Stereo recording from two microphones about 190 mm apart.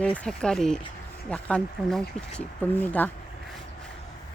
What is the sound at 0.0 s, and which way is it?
Speech, 5° left (ahead or behind).